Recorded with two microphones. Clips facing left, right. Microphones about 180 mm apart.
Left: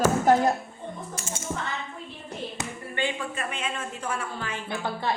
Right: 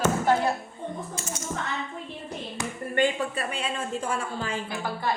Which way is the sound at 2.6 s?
20° left (ahead or behind).